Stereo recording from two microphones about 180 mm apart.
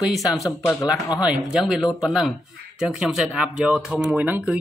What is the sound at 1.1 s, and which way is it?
Speech, 5° right (ahead or behind).